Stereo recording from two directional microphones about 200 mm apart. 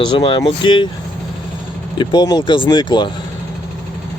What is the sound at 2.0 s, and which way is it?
Speech, 20° left (ahead or behind).